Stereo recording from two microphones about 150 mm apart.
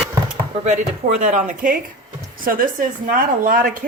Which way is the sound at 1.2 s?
55° right (ahead or behind).